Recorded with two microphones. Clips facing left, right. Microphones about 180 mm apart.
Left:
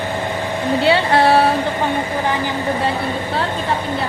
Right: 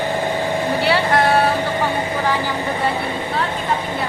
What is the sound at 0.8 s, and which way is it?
Speech, 25° left (ahead or behind).